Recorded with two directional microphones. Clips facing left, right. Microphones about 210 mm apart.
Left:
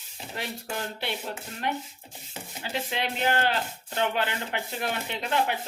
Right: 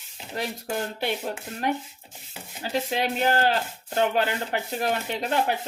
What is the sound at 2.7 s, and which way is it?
Speech, 40° right (ahead or behind).